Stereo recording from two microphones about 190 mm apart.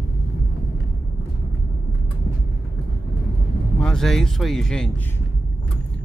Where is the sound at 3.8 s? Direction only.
5° left (ahead or behind).